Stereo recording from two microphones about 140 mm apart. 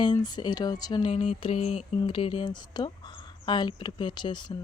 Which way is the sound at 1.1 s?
45° left (ahead or behind).